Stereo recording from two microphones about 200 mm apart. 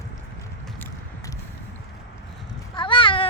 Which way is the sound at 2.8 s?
25° left (ahead or behind).